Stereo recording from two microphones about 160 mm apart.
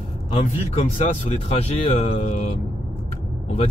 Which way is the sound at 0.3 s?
40° left (ahead or behind).